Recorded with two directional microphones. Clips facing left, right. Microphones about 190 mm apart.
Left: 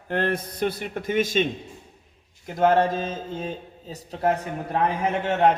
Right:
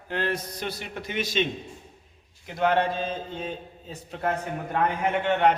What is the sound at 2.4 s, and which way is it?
A man's voice, 45° left (ahead or behind).